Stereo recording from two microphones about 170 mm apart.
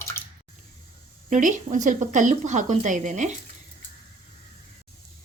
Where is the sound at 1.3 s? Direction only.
50° right (ahead or behind).